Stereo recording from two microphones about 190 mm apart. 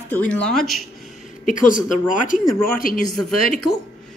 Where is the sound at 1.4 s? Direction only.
45° left (ahead or behind).